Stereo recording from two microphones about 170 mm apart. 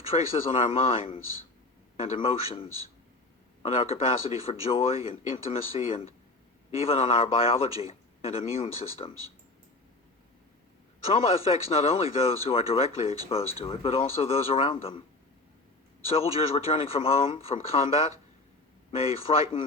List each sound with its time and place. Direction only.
0.1 s speech: 35° left (ahead or behind)
11.0 s a man's voice: 35° left (ahead or behind)
16.0 s speech: 35° left (ahead or behind)